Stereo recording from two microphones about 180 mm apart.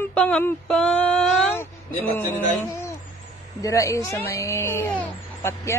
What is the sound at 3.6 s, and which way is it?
Speech, 15° left (ahead or behind).